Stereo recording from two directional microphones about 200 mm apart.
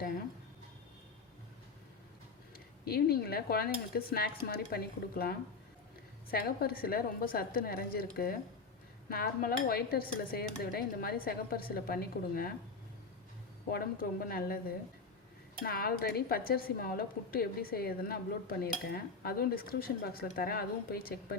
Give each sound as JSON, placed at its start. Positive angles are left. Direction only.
{"t": 2.8, "sound": "speech", "side_deg": 50}
{"t": 13.7, "sound": "speech", "side_deg": 45}
{"t": 15.6, "sound": "speech", "side_deg": 50}